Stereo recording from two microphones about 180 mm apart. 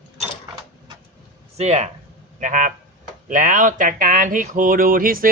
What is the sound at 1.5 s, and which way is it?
Speech, 35° right (ahead or behind).